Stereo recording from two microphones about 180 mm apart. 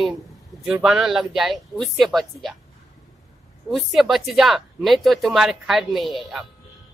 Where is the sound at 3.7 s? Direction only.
Centre (ahead or behind).